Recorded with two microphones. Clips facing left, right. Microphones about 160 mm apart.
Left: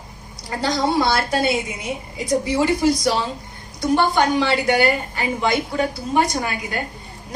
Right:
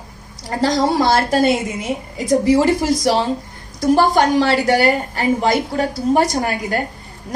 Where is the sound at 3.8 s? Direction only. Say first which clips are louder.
Right 4 dB; 40° right (ahead or behind).